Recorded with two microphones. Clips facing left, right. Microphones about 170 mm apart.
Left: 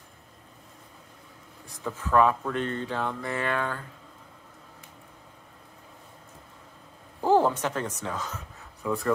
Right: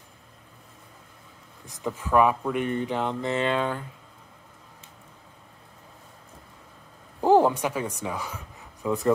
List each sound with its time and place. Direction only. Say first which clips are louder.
1.7 s speech: right 2 dB; 15° right (ahead or behind)
7.2 s speech: right 3 dB; 15° right (ahead or behind)